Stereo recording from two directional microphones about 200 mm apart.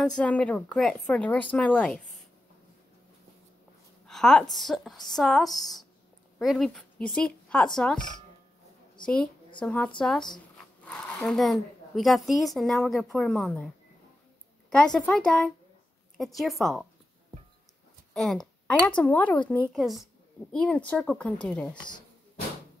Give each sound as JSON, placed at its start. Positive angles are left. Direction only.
{"t": 0.0, "sound": "speech", "side_deg": 5}
{"t": 4.1, "sound": "a woman's voice", "side_deg": 0}
{"t": 9.0, "sound": "a woman's voice", "side_deg": 5}
{"t": 14.7, "sound": "a woman's voice", "side_deg": 5}
{"t": 18.1, "sound": "a woman's voice", "side_deg": 0}
{"t": 21.7, "sound": "speech", "side_deg": 20}